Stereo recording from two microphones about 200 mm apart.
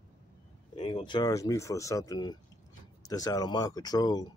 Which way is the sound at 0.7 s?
25° left (ahead or behind).